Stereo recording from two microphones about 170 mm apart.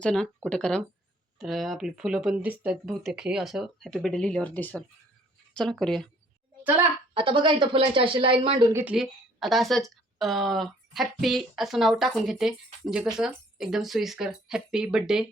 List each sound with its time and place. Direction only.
0.0 s a woman's voice: 5° left (ahead or behind)
7.1 s a woman's voice: 30° right (ahead or behind)
8.7 s a woman's voice: 10° right (ahead or behind)